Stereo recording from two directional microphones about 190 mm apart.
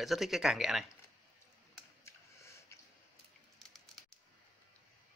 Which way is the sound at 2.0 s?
15° left (ahead or behind).